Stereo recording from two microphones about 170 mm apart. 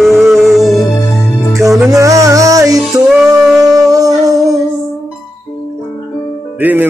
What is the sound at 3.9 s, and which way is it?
Music, 20° right (ahead or behind).